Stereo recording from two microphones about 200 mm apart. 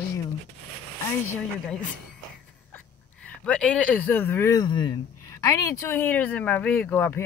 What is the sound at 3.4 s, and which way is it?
Speech, 5° left (ahead or behind).